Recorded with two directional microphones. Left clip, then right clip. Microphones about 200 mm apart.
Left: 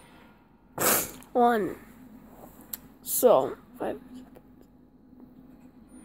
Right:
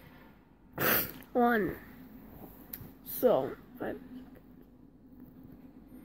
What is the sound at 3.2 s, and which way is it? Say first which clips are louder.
Speech: left 7 dB; 15° left (ahead or behind).